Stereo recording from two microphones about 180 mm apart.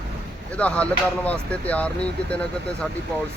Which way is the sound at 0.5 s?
5° left (ahead or behind).